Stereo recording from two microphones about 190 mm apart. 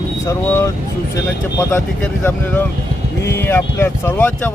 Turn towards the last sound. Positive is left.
turn(degrees=10)  # may be behind; listen again after turning